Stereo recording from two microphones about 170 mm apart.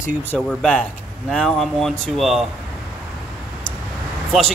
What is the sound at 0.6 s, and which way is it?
Speech, 10° left (ahead or behind).